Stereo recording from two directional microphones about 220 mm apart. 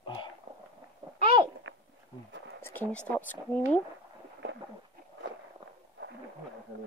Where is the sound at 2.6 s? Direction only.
10° left (ahead or behind).